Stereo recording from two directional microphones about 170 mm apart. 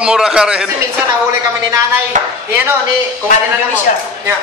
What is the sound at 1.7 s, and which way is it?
Speech, 15° right (ahead or behind).